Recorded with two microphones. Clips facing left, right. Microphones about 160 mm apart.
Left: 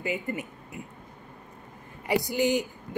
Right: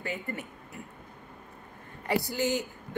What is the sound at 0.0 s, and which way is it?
Speech, 15° left (ahead or behind).